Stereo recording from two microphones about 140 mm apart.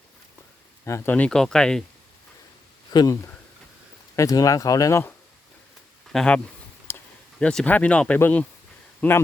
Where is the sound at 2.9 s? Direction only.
30° left (ahead or behind).